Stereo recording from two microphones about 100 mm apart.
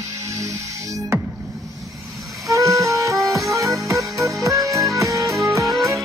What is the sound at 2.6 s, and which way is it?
Music, 35° right (ahead or behind).